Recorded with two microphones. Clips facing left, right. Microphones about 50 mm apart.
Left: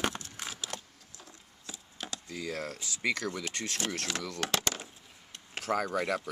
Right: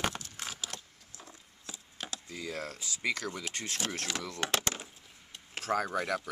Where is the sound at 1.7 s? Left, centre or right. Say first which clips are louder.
Left 1 dB; centre.